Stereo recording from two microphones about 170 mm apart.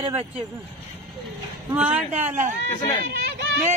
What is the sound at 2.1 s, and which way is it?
Speech, 45° right (ahead or behind).